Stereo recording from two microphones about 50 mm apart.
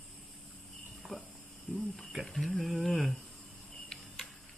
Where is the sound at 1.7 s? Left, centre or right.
Centre.